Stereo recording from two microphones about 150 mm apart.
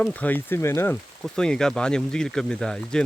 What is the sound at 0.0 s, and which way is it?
Speech, 10° left (ahead or behind).